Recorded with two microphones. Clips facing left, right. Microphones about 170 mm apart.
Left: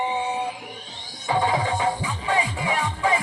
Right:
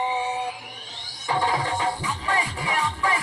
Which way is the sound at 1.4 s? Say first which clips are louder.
Left 2 dB; 20° left (ahead or behind).